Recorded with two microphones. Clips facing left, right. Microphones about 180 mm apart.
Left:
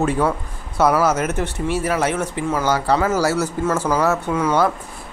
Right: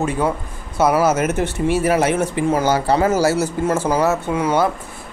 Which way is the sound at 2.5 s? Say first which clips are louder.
Even; 25° right (ahead or behind).